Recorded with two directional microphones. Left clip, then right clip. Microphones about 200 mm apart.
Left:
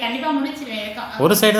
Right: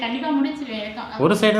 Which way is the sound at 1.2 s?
30° left (ahead or behind).